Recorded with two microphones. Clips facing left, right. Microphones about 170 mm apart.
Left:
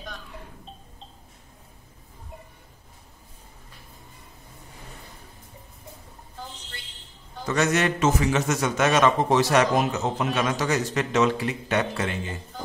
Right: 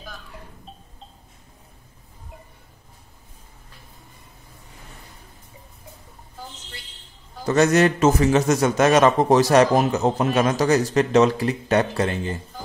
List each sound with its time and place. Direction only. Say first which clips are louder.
7.4 s a man's voice: right 6 dB; 35° right (ahead or behind)